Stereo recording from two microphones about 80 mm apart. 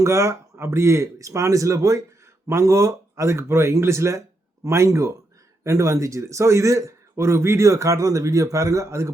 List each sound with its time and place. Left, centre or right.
0.0 s a man's voice: right